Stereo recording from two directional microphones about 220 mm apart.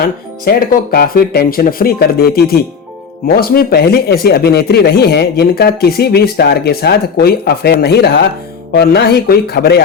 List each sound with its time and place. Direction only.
0.4 s speech: 45° left (ahead or behind)